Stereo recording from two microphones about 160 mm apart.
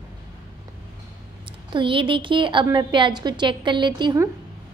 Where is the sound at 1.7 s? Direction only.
30° right (ahead or behind).